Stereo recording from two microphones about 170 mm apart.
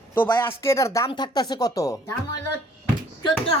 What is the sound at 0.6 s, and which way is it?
Speech, 15° left (ahead or behind).